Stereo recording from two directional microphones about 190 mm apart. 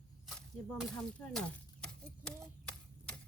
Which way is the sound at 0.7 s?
5° left (ahead or behind).